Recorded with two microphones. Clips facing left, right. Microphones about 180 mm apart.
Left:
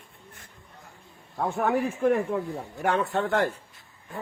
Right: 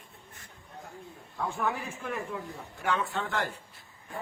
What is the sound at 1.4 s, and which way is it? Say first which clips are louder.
Speech: left 7 dB; 55° left (ahead or behind).